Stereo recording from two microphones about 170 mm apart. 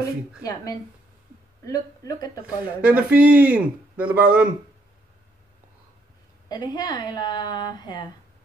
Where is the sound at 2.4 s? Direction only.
10° right (ahead or behind).